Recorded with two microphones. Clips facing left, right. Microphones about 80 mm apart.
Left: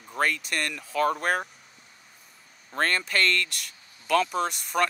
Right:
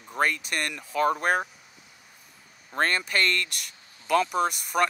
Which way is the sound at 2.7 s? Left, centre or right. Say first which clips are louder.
Even; centre.